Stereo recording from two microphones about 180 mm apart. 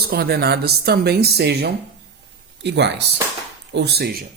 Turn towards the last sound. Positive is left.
turn(degrees=-60)  # may be behind; listen again after turning